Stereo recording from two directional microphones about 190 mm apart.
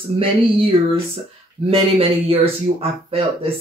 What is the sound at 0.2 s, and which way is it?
Speech, 30° right (ahead or behind).